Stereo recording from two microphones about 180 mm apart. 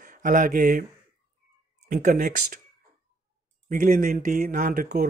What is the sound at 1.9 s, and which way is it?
Speech, 45° right (ahead or behind).